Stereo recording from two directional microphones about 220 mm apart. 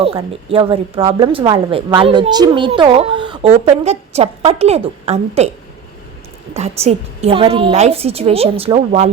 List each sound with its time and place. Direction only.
0.0 s speech: 25° right (ahead or behind)
6.5 s speech: 30° right (ahead or behind)